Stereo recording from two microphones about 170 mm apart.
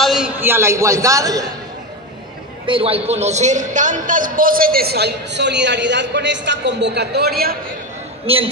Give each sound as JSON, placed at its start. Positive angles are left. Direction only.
{"t": 0.0, "sound": "a man's voice", "side_deg": -5}
{"t": 2.6, "sound": "a man's voice", "side_deg": -30}
{"t": 8.3, "sound": "a man's voice", "side_deg": -35}